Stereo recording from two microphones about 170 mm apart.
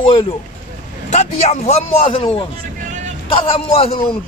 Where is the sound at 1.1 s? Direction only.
40° left (ahead or behind).